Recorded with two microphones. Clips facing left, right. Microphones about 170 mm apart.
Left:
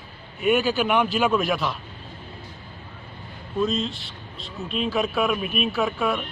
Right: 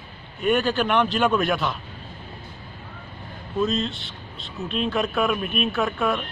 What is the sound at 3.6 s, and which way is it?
A man's voice, centre (ahead or behind).